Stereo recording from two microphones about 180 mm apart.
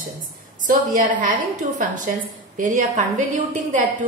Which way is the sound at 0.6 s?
50° right (ahead or behind).